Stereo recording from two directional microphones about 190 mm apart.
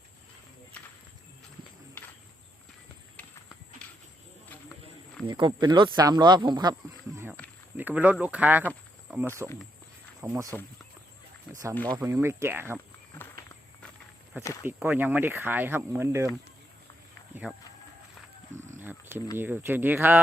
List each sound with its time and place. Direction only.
5.3 s speech: 25° right (ahead or behind)
7.8 s speech: 10° right (ahead or behind)
11.9 s speech: 15° right (ahead or behind)
14.6 s speech: 10° right (ahead or behind)
17.4 s speech: 5° right (ahead or behind)
18.8 s purr: 10° right (ahead or behind)
19.4 s speech: 10° right (ahead or behind)